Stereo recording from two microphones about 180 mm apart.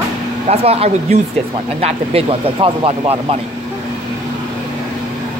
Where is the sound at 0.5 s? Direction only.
35° right (ahead or behind).